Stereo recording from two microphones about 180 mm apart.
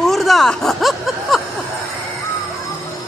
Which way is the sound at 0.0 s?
Centre (ahead or behind).